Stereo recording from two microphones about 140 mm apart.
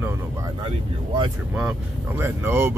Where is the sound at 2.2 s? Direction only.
20° right (ahead or behind).